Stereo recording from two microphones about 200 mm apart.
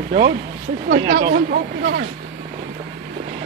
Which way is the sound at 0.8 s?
65° right (ahead or behind).